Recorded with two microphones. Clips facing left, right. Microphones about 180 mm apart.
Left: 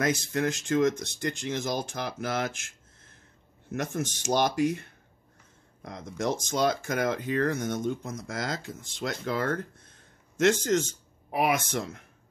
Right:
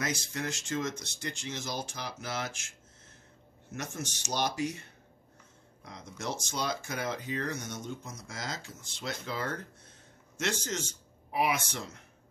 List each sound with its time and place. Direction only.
0.0 s speech: 55° left (ahead or behind)
3.7 s speech: 55° left (ahead or behind)